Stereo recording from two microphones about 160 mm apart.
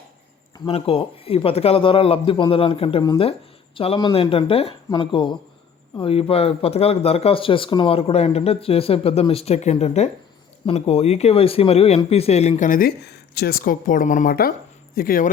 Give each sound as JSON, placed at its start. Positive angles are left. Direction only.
{"t": 0.7, "sound": "speech", "side_deg": 35}